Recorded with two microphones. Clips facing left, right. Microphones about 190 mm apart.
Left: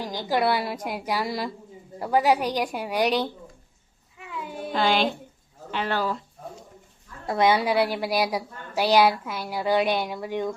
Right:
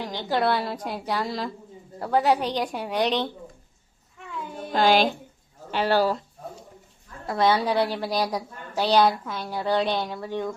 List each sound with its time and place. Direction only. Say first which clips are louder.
0.0 s a woman's voice: even; 10° left (ahead or behind)
4.2 s a sound: left 1 dB; 5° left (ahead or behind)
4.7 s speech: right 3 dB; 40° right (ahead or behind)
7.3 s a woman's voice: left 1 dB; 15° left (ahead or behind)